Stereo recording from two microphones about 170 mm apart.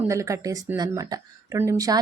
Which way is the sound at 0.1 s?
15° right (ahead or behind).